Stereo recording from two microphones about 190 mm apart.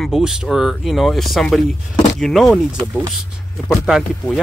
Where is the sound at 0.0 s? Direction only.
Centre (ahead or behind).